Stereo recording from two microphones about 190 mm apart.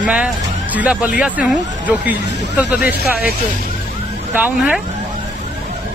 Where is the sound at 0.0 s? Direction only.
5° right (ahead or behind).